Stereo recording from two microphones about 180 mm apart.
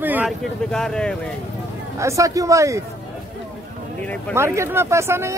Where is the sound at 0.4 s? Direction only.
5° left (ahead or behind).